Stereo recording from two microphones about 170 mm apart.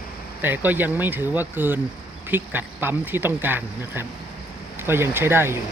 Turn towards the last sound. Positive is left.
turn(degrees=-15)  # may be behind; listen again after turning